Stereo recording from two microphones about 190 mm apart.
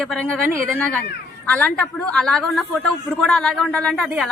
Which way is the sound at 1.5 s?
5° left (ahead or behind).